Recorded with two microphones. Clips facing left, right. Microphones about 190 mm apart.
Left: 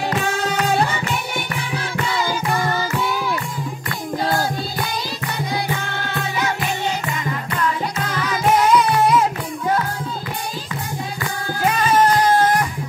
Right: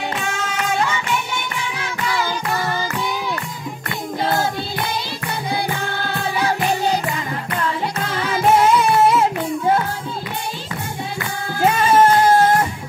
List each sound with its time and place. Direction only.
0.2 s music: 35° left (ahead or behind)
6.4 s music: 35° right (ahead or behind)
8.0 s music: 30° right (ahead or behind)
11.6 s music: 25° right (ahead or behind)